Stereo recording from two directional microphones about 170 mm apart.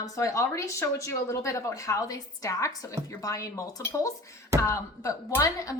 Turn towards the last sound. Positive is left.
turn(degrees=20)  # may be behind; listen again after turning